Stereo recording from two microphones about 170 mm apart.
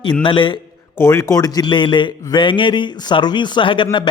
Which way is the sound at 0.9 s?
15° left (ahead or behind).